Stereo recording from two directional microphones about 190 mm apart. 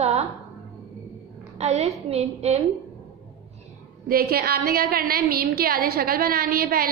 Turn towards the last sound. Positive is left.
turn(degrees=-50)  # may be behind; listen again after turning